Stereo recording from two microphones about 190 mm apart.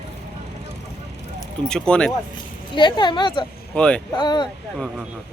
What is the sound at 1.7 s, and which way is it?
Speech, 5° left (ahead or behind).